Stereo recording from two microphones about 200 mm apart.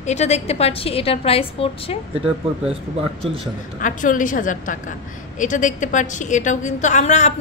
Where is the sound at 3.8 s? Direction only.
40° left (ahead or behind).